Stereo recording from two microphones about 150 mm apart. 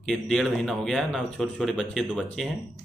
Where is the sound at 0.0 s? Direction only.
Centre (ahead or behind).